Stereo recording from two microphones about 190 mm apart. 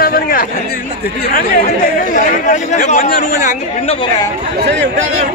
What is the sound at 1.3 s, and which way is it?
Speech, 50° left (ahead or behind).